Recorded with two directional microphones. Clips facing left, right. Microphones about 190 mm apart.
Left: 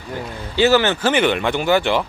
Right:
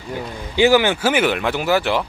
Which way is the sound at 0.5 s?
15° right (ahead or behind).